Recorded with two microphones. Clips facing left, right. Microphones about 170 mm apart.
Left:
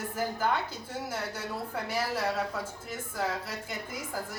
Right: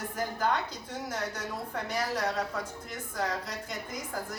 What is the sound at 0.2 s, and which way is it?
A woman's voice, 5° left (ahead or behind).